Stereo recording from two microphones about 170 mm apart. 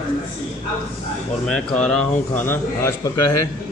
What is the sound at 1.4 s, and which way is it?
A man's voice, 5° left (ahead or behind).